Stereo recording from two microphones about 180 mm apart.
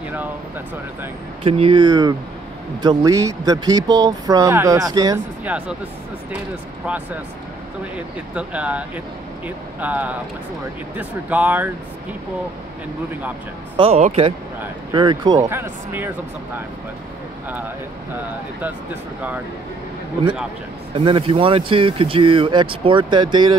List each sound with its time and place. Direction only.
1.4 s speech: 30° right (ahead or behind)
5.4 s speech: 10° right (ahead or behind)
8.4 s speech: 5° right (ahead or behind)
13.7 s speech: 35° right (ahead or behind)
14.6 s speech: 20° right (ahead or behind)
20.9 s speech: 30° right (ahead or behind)